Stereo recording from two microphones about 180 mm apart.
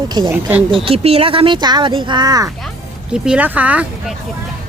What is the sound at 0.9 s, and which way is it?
Speech, 35° right (ahead or behind).